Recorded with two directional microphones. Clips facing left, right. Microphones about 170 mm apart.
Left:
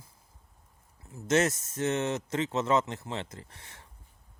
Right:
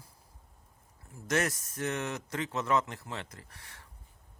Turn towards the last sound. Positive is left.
turn(degrees=25)  # may be behind; listen again after turning